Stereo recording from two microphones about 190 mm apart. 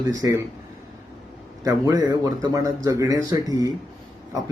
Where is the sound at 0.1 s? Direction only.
15° right (ahead or behind).